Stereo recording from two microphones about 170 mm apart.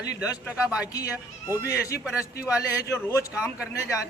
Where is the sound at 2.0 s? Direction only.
5° right (ahead or behind).